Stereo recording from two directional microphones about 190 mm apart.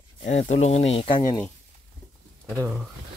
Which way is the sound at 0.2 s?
40° left (ahead or behind).